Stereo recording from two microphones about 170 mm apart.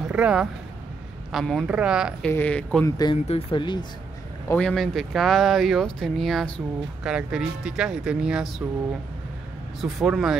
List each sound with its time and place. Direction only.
0.0 s speech: 5° right (ahead or behind)
2.2 s speech: 10° left (ahead or behind)
3.3 s speech: 30° left (ahead or behind)
4.5 s speech: 5° left (ahead or behind)
9.8 s speech: centre (ahead or behind)